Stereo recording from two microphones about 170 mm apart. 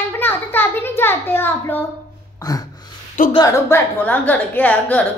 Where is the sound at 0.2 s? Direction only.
10° left (ahead or behind).